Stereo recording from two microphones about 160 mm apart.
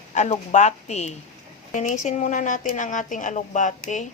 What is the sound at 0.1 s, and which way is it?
Speech, 50° left (ahead or behind).